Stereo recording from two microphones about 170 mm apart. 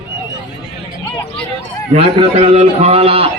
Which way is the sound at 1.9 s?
40° right (ahead or behind).